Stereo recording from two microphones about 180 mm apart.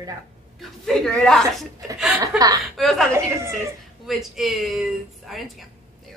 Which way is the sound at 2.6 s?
Centre (ahead or behind).